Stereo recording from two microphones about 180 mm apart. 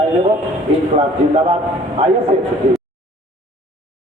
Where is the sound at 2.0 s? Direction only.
35° right (ahead or behind).